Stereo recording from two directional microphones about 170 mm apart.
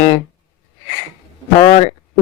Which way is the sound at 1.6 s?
40° left (ahead or behind).